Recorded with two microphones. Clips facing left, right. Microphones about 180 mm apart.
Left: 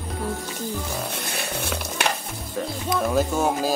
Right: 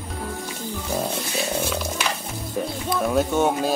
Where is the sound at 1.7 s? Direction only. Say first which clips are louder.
Right 2 dB; 60° left (ahead or behind).